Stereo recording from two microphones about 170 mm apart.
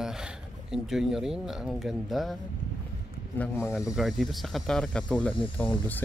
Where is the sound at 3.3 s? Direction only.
10° left (ahead or behind).